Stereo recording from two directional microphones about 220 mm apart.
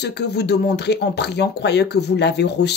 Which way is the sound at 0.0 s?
50° left (ahead or behind).